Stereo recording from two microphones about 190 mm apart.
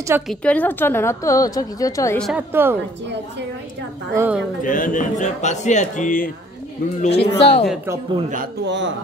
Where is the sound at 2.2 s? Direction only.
10° right (ahead or behind).